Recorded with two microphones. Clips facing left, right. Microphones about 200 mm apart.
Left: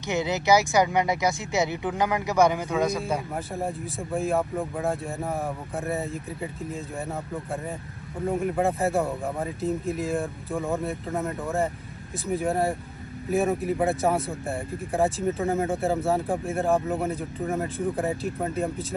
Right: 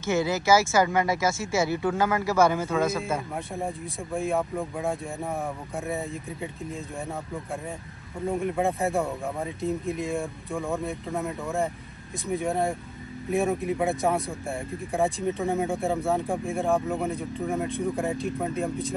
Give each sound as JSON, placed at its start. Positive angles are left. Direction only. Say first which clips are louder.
{"t": 0.0, "sound": "speech", "louder": "right 1 dB", "side_deg": 15}
{"t": 3.5, "sound": "speech", "louder": "left 2 dB", "side_deg": 0}
{"t": 8.3, "sound": "speech", "louder": "left 1 dB", "side_deg": 0}